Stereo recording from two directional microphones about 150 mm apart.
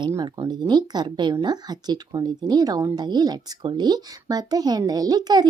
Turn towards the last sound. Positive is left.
turn(degrees=-25)  # may be behind; listen again after turning